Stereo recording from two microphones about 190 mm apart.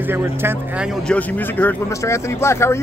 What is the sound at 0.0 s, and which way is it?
Speech, 10° right (ahead or behind).